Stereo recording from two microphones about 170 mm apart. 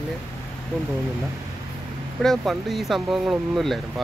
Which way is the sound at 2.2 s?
Centre (ahead or behind).